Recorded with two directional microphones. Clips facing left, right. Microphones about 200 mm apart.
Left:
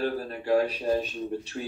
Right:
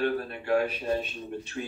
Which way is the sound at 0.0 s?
35° left (ahead or behind).